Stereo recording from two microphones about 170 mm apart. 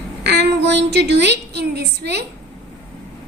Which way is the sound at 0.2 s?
75° right (ahead or behind).